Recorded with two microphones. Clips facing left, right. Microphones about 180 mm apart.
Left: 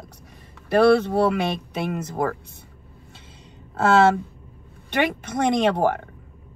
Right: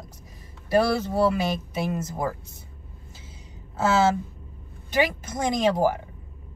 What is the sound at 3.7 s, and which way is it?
A woman's voice, 60° left (ahead or behind).